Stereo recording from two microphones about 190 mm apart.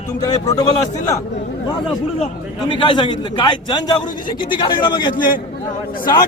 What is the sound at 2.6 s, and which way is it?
A man's voice, 25° left (ahead or behind).